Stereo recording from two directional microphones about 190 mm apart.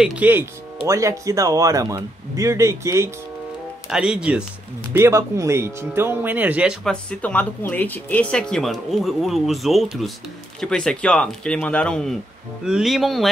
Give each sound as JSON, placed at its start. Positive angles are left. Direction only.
{"t": 0.0, "sound": "speech", "side_deg": -5}
{"t": 3.9, "sound": "speech", "side_deg": -5}